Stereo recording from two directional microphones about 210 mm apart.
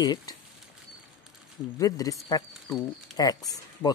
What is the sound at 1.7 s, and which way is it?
Speech, 15° left (ahead or behind).